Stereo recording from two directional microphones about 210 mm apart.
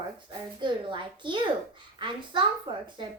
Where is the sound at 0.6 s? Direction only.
20° right (ahead or behind).